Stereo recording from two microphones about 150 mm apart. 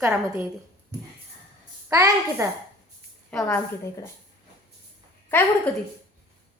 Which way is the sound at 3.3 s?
5° left (ahead or behind).